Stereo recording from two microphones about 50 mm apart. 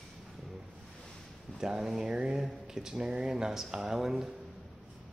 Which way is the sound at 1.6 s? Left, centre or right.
Centre.